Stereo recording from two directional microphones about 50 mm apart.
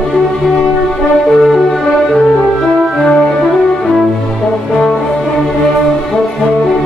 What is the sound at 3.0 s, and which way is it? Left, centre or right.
Music, centre.